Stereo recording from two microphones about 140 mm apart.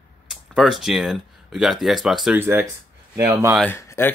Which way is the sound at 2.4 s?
15° right (ahead or behind).